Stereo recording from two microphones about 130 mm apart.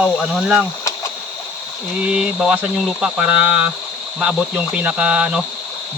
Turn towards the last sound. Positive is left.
turn(degrees=-10)  # may be behind; listen again after turning